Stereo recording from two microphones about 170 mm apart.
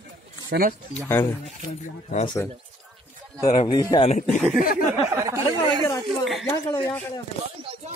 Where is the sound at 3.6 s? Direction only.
25° left (ahead or behind).